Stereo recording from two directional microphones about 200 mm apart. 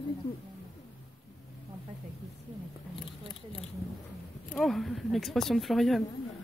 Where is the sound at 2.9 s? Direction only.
25° left (ahead or behind).